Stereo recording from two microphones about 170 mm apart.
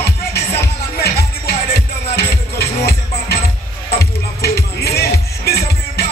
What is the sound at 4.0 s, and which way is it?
Music, 70° left (ahead or behind).